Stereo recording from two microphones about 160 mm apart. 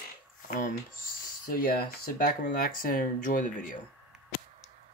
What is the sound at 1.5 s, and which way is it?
Speech, 65° left (ahead or behind).